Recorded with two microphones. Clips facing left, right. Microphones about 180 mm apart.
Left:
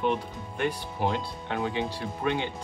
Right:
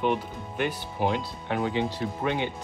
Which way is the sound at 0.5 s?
5° right (ahead or behind).